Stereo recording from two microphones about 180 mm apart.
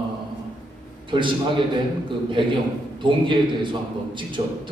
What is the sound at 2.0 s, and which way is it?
A man's voice, 25° right (ahead or behind).